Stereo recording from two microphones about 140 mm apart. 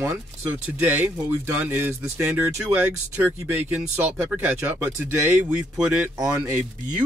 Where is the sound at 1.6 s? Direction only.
15° right (ahead or behind).